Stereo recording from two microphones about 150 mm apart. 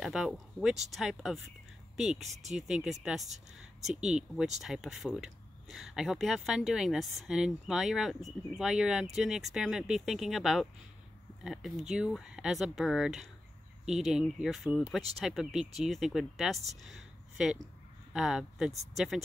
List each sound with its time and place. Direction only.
0.0 s speech: 5° right (ahead or behind)
2.5 s speech: 5° right (ahead or behind)
4.6 s speech: 5° right (ahead or behind)